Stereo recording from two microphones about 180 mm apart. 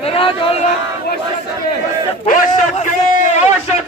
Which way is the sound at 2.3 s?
50° left (ahead or behind).